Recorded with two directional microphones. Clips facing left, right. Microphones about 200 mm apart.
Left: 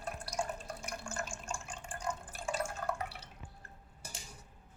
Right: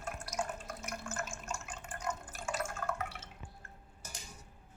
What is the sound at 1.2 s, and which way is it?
Drip, 30° left (ahead or behind).